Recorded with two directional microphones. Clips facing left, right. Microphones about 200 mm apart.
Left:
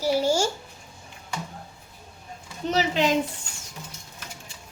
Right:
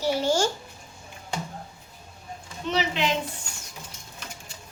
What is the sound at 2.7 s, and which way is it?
Speech, 40° left (ahead or behind).